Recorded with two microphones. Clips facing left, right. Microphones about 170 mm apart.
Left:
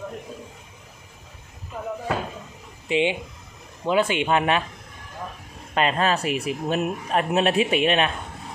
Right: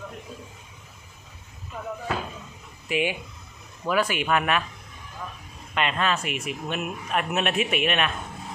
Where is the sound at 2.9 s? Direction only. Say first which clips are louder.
Left 4 dB; 25° left (ahead or behind).